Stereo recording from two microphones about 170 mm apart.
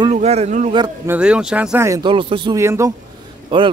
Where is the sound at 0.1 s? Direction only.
40° right (ahead or behind).